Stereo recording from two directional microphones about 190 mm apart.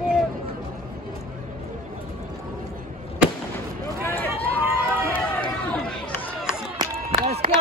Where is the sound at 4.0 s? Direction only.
15° left (ahead or behind).